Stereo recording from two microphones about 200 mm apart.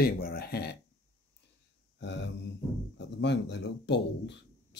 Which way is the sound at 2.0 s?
60° left (ahead or behind).